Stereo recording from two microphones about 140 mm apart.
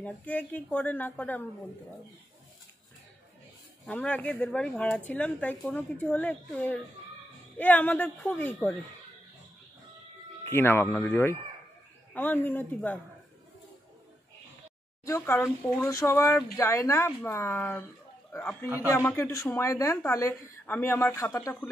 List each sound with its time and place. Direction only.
0.0 s speech: 10° left (ahead or behind)
3.8 s speech: 10° left (ahead or behind)
10.4 s speech: 15° left (ahead or behind)
15.0 s speech: 20° left (ahead or behind)